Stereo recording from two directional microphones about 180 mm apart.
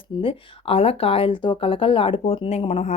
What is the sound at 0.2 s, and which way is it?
Speech, 30° left (ahead or behind).